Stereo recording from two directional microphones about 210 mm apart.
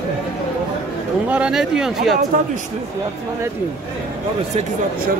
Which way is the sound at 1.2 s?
5° right (ahead or behind).